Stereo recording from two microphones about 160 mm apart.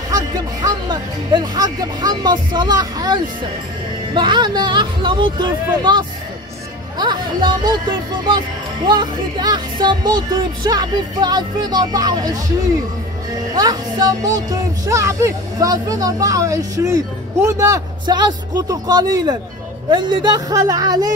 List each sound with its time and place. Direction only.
0.1 s speech: 25° right (ahead or behind)
8.8 s speech: 25° right (ahead or behind)
13.6 s speech: 25° right (ahead or behind)